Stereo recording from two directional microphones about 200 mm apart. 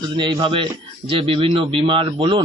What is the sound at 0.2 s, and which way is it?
A man's voice, 25° right (ahead or behind).